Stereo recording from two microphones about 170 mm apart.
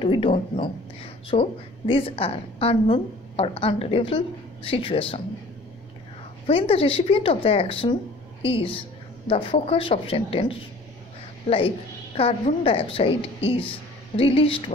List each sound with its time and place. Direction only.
0.0 s speech: 30° left (ahead or behind)
6.4 s speech: 35° left (ahead or behind)